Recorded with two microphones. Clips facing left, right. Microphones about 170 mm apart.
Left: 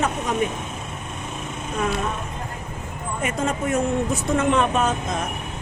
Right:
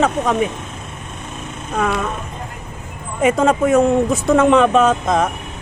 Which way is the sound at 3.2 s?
90° right.